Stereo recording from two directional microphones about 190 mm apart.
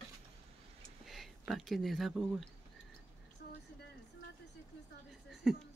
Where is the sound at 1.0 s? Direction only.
Centre (ahead or behind).